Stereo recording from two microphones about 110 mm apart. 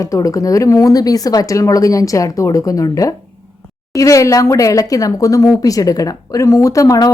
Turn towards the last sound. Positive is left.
turn(degrees=30)  # may be behind; listen again after turning